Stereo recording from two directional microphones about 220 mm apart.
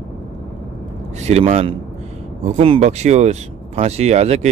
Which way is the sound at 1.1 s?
30° right (ahead or behind).